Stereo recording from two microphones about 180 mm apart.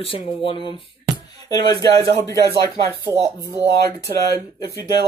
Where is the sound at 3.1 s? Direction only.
10° right (ahead or behind).